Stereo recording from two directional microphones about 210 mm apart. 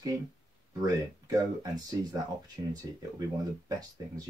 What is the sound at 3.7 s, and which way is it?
Speech, 15° right (ahead or behind).